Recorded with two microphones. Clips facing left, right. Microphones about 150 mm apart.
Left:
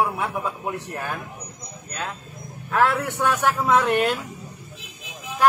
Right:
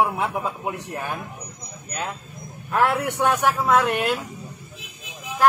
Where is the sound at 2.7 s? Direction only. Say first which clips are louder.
Even; 15° right (ahead or behind).